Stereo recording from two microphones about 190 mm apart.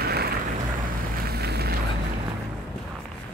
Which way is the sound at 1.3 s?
55° right (ahead or behind).